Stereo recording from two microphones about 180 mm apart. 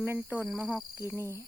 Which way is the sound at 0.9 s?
15° right (ahead or behind).